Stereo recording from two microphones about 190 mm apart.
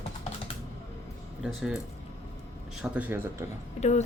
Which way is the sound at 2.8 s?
5° right (ahead or behind).